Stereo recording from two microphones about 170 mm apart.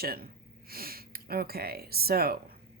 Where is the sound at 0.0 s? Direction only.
65° right (ahead or behind).